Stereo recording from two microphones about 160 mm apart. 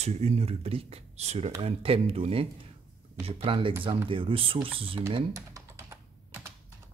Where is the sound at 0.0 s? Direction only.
40° right (ahead or behind).